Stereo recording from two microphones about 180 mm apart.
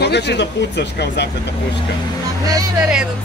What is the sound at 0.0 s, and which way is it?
Speech, 70° left (ahead or behind).